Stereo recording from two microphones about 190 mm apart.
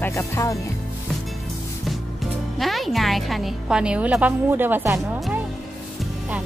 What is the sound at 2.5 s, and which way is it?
A woman's voice, centre (ahead or behind).